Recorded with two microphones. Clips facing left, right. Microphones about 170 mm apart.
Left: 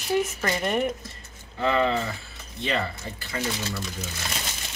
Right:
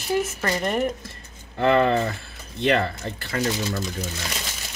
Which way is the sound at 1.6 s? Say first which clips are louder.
Right 5 dB; 55° right (ahead or behind).